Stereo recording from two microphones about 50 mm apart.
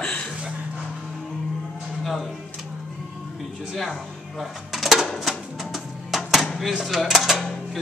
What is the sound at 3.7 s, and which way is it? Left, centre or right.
Dishes, centre.